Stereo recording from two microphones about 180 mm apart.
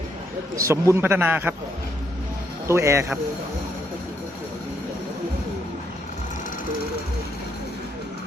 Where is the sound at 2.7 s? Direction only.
15° right (ahead or behind).